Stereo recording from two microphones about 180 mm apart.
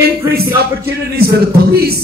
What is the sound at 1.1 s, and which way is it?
Speech, 60° right (ahead or behind).